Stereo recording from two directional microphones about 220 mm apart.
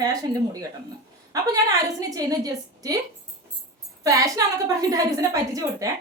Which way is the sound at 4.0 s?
15° right (ahead or behind).